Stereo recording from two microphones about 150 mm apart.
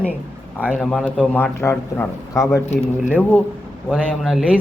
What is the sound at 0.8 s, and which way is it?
A man's voice, 5° left (ahead or behind).